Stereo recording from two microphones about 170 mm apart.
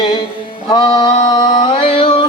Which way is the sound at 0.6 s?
30° left (ahead or behind).